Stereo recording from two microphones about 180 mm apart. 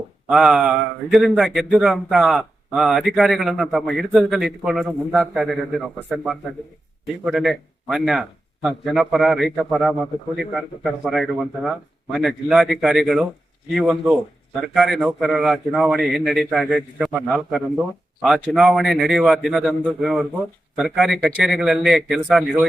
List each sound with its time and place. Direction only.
0.3 s speech: centre (ahead or behind)
11.0 s speech: centre (ahead or behind)